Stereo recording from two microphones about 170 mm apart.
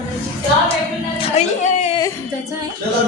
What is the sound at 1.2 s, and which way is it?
Speech, 40° left (ahead or behind).